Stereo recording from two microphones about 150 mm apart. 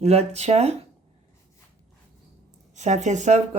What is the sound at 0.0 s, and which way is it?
Speech, 45° right (ahead or behind).